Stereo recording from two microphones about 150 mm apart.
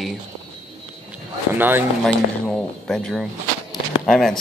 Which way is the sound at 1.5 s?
15° right (ahead or behind).